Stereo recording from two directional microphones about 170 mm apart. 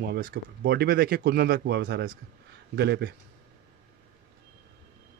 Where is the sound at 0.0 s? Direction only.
70° right (ahead or behind).